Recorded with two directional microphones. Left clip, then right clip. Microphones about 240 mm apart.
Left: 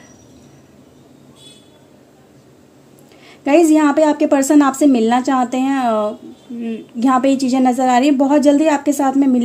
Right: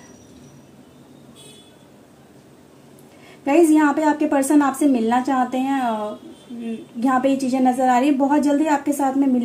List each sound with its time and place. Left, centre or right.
3.4 s a woman's voice: left